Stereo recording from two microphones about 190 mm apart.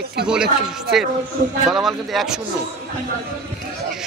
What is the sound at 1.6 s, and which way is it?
Speech, centre (ahead or behind).